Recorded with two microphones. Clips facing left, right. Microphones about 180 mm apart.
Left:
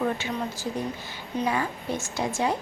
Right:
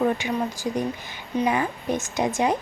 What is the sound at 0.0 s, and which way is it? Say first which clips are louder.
A woman's voice: right 4 dB; 15° right (ahead or behind).